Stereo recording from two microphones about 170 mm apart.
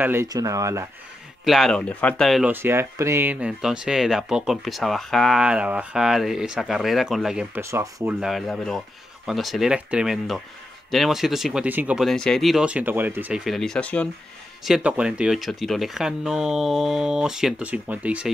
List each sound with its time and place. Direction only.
0.0 s speech: 15° right (ahead or behind)
1.4 s speech: centre (ahead or behind)
2.5 s speech: 15° right (ahead or behind)
7.7 s speech: 15° right (ahead or behind)
8.2 s speech: centre (ahead or behind)
14.6 s speech: 5° right (ahead or behind)